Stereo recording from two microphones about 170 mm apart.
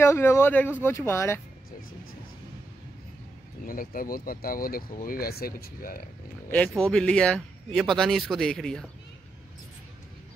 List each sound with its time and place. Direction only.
0.0 s speech: 15° left (ahead or behind)
3.6 s speech: 55° left (ahead or behind)
6.5 s speech: 5° left (ahead or behind)